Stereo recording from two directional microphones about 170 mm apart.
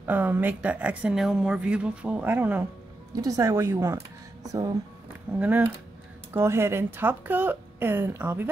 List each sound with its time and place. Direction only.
0.0 s speech: 10° right (ahead or behind)